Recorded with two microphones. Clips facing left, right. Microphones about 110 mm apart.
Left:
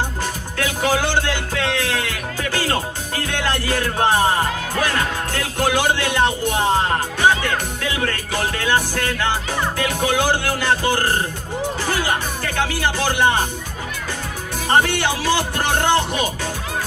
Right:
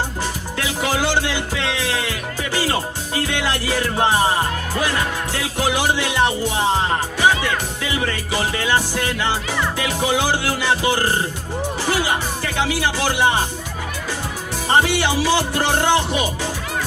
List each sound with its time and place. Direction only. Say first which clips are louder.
0.6 s music: left 2 dB; 15° right (ahead or behind)
11.8 s speech: right 4 dB; 15° right (ahead or behind)
12.5 s music: even; 15° right (ahead or behind)
14.7 s music: even; 15° right (ahead or behind)